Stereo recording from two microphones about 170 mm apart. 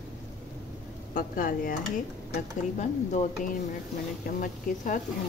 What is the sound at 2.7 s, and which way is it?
Speech, 45° left (ahead or behind).